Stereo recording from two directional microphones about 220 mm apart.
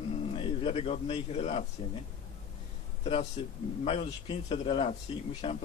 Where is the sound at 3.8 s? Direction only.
25° left (ahead or behind).